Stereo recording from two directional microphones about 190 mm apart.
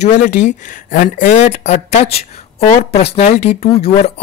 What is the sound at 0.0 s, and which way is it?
Speech, 40° left (ahead or behind).